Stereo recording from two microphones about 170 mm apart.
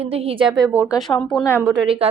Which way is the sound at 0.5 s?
15° right (ahead or behind).